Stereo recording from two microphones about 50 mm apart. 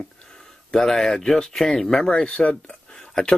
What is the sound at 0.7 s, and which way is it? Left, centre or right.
Speech, centre.